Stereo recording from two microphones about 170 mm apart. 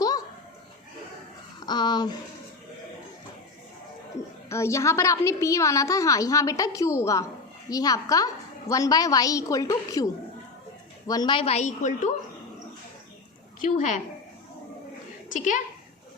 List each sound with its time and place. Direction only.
1.6 s a sound: 25° left (ahead or behind)
4.4 s a woman's voice: 15° left (ahead or behind); by 12.1 s 45° left (ahead or behind)
13.7 s a woman's voice: 45° left (ahead or behind)
15.3 s a woman's voice: 45° left (ahead or behind)